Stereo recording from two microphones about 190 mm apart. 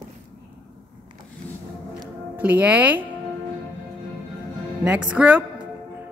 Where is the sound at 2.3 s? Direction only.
10° right (ahead or behind).